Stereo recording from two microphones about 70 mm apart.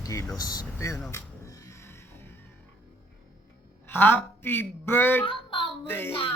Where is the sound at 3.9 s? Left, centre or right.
Left.